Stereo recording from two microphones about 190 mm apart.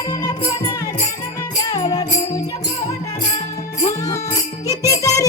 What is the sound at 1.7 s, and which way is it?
Music, 20° left (ahead or behind).